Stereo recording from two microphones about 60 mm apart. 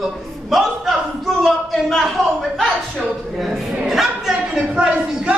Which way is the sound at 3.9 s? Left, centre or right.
Centre.